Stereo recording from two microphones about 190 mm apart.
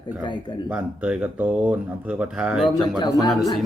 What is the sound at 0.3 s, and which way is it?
Speech, 25° left (ahead or behind).